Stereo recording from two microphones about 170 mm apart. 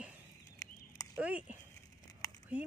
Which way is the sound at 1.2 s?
5° right (ahead or behind).